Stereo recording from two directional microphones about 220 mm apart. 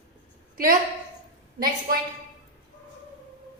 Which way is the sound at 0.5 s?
40° right (ahead or behind).